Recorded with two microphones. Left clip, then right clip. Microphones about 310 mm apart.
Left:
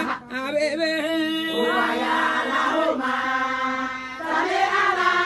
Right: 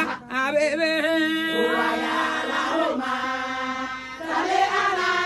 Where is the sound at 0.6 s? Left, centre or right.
Centre.